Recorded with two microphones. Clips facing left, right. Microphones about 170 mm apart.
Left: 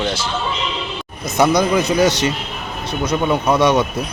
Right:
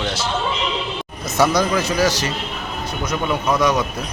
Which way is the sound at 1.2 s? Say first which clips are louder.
Left 3 dB; 15° left (ahead or behind).